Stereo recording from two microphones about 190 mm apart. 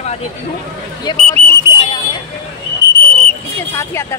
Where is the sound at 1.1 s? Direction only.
20° left (ahead or behind).